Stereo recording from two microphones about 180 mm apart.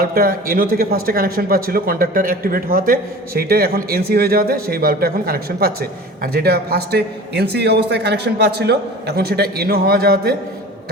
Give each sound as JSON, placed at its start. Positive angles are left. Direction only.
{"t": 0.0, "sound": "speech", "side_deg": -55}